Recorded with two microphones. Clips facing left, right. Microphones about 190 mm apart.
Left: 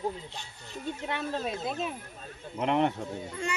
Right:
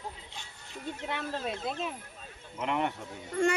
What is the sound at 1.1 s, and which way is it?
Speech, centre (ahead or behind).